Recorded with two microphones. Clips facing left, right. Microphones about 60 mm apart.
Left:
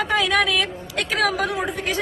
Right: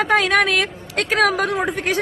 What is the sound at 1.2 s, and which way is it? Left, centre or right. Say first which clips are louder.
Speech: right 4 dB; right.